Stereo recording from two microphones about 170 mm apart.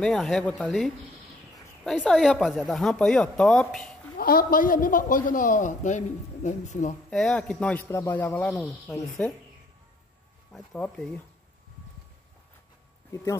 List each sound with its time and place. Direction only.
0.0 s speech: 5° left (ahead or behind)
4.2 s a man's voice: 60° left (ahead or behind)
7.1 s a man's voice: 5° left (ahead or behind)
10.5 s speech: 5° left (ahead or behind)
13.1 s a man's voice: 20° left (ahead or behind)